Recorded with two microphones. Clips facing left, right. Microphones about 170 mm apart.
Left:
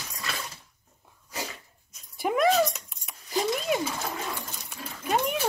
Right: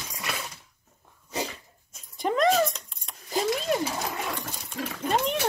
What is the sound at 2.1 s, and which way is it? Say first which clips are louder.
Dog: even; 5° left (ahead or behind).